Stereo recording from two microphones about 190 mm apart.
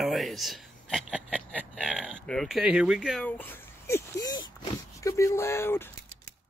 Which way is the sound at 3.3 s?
10° left (ahead or behind).